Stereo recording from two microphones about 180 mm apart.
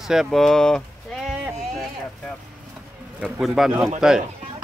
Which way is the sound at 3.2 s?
Centre (ahead or behind).